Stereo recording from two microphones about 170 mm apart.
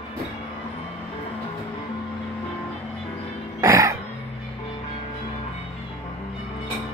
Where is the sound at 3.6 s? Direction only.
15° right (ahead or behind).